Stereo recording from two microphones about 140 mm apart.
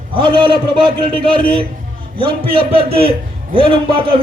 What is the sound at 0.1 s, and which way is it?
A man's voice, 35° right (ahead or behind).